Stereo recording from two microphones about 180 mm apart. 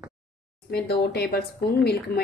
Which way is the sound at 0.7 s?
65° left (ahead or behind).